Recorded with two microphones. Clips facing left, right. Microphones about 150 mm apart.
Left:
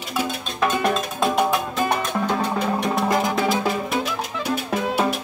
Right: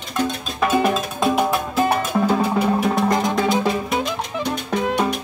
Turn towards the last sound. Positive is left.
turn(degrees=5)  # may be behind; listen again after turning